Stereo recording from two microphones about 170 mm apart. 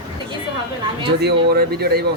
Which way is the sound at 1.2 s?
70° right (ahead or behind).